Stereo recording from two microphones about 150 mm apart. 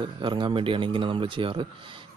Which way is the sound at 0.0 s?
30° right (ahead or behind).